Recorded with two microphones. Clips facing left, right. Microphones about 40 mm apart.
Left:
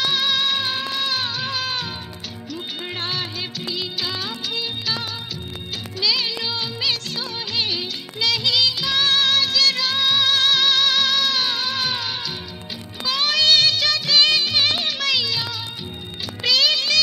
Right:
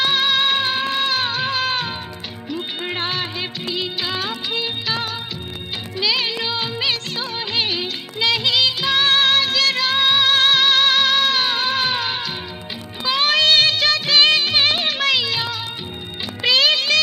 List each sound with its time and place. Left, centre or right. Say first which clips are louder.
0.0 s music: right 3 dB; centre
5.9 s music of bollywood: right 2 dB; right
13.0 s music: right 3 dB; right